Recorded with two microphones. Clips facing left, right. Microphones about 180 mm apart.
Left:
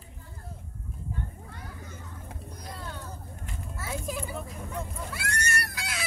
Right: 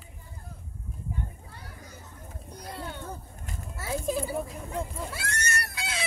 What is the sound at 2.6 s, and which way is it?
Children playing, 30° right (ahead or behind).